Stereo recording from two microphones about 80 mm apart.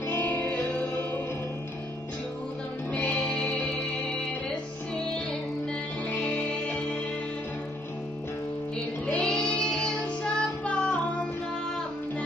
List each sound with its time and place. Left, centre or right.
0.3 s music: left
2.9 s music: left
3.3 s music: centre
6.2 s music: centre
9.0 s child singing: centre